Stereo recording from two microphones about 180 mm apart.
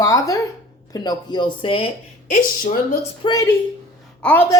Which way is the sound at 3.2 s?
20° left (ahead or behind).